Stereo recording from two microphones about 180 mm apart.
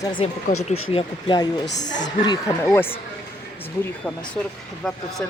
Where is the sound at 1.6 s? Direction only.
75° left (ahead or behind).